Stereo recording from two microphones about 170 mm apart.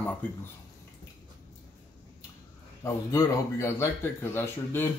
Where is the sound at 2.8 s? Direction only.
15° left (ahead or behind).